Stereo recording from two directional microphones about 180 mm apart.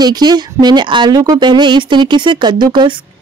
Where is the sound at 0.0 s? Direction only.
25° right (ahead or behind).